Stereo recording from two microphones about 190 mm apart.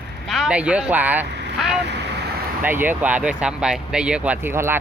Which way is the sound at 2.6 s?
10° right (ahead or behind).